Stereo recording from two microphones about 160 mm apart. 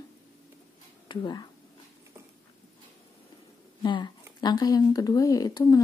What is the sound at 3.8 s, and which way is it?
Speech, 30° left (ahead or behind).